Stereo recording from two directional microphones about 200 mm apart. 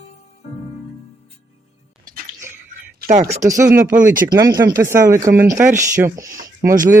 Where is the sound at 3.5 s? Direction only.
15° right (ahead or behind).